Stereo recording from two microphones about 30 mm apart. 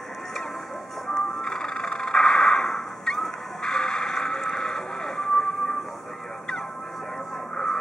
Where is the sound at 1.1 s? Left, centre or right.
Left.